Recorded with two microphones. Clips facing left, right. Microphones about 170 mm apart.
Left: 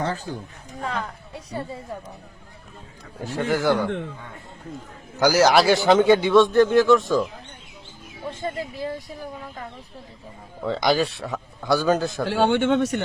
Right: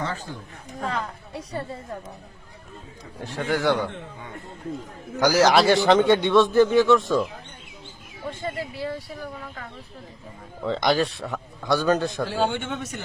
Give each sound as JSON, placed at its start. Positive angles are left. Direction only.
{"t": 0.0, "sound": "speech", "side_deg": 40}
{"t": 3.2, "sound": "a man's voice", "side_deg": 0}
{"t": 5.2, "sound": "a man's voice", "side_deg": 0}
{"t": 8.4, "sound": "speech", "side_deg": 20}
{"t": 10.6, "sound": "a man's voice", "side_deg": 0}
{"t": 12.3, "sound": "a man's voice", "side_deg": 70}